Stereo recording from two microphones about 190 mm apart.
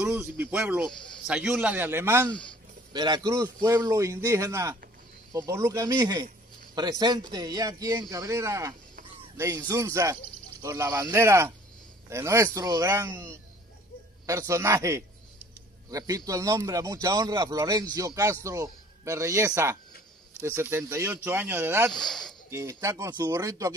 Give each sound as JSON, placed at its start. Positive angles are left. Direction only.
{"t": 0.0, "sound": "speech", "side_deg": -10}
{"t": 2.9, "sound": "speech", "side_deg": -25}
{"t": 21.9, "sound": "speech", "side_deg": 5}
{"t": 22.5, "sound": "speech", "side_deg": -15}